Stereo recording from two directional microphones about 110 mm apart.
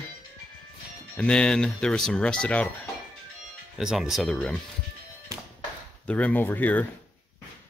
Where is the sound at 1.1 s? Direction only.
10° left (ahead or behind).